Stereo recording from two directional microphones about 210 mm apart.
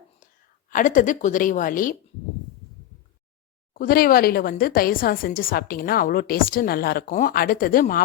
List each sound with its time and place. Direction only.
0.7 s a woman's voice: 40° left (ahead or behind)
3.8 s a woman's voice: 45° left (ahead or behind)